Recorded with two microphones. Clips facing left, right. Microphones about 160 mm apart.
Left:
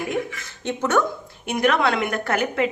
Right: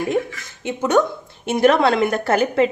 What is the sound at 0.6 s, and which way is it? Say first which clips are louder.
Speech: right 4 dB; 10° right (ahead or behind).